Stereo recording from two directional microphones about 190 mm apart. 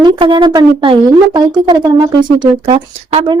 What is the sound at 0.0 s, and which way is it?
A woman's voice, 25° right (ahead or behind).